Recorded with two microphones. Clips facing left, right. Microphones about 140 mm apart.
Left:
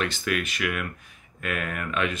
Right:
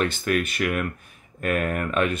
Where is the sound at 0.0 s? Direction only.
40° right (ahead or behind).